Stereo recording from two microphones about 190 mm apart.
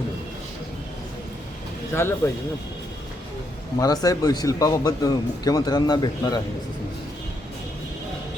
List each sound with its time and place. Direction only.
1.9 s speech: 10° left (ahead or behind)
3.8 s speech: 20° left (ahead or behind)